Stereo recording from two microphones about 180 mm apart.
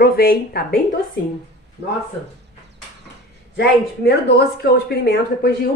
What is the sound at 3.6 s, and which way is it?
Speech, 65° left (ahead or behind).